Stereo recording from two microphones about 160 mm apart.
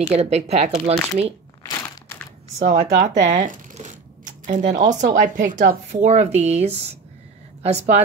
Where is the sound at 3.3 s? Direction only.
50° right (ahead or behind).